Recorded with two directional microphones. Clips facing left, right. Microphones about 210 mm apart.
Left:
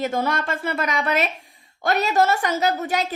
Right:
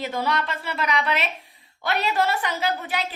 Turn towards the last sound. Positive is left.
turn(degrees=45)  # may be behind; listen again after turning